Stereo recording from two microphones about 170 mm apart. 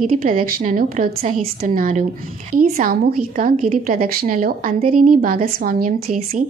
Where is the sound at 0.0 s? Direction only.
55° right (ahead or behind).